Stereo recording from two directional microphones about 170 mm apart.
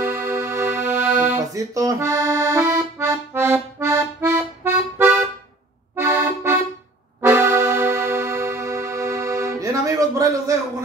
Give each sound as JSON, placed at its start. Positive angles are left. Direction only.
{"t": 0.0, "sound": "music", "side_deg": -15}
{"t": 5.9, "sound": "accordion", "side_deg": -15}
{"t": 7.2, "sound": "music", "side_deg": -15}